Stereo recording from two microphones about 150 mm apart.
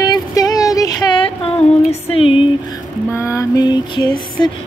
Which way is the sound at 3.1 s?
20° left (ahead or behind).